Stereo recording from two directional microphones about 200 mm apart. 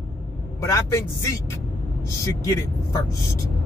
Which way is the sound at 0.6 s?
15° left (ahead or behind).